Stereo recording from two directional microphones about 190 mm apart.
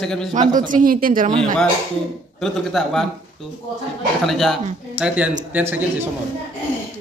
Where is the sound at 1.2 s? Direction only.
30° right (ahead or behind).